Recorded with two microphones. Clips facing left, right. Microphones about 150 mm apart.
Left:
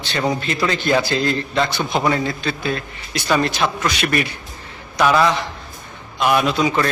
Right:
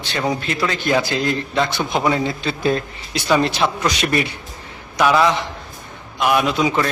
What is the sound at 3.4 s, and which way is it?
Speech, 25° right (ahead or behind).